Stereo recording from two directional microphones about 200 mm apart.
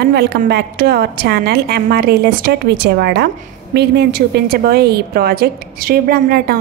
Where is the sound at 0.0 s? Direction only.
55° right (ahead or behind).